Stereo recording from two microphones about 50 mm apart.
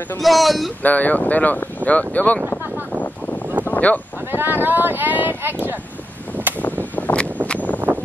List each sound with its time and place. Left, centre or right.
0.2 s speech: centre
0.8 s speech: left
3.7 s speech: left
4.3 s speech: right
6.6 s a sound: left